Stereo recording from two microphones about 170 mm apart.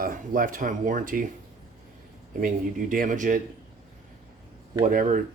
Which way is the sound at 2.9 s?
50° right (ahead or behind).